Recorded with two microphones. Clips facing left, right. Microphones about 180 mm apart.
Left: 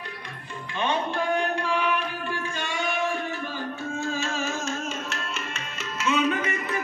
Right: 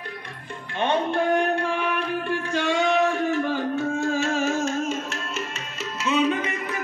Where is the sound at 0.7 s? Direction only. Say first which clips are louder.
Right 4 dB; 60° right (ahead or behind).